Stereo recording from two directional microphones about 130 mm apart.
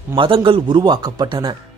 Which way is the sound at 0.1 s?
40° right (ahead or behind).